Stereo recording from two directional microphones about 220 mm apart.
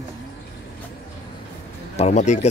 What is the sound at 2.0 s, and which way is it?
Speech, 30° left (ahead or behind).